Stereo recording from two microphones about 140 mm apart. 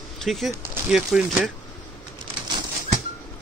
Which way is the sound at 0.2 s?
Centre (ahead or behind).